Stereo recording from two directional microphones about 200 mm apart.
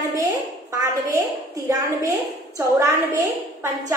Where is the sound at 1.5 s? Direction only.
15° right (ahead or behind).